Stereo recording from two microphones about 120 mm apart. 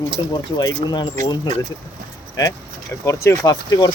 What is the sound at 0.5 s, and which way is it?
Speech, 35° left (ahead or behind).